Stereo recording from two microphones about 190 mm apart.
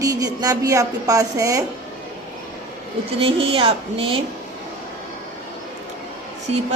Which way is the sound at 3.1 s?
30° right (ahead or behind).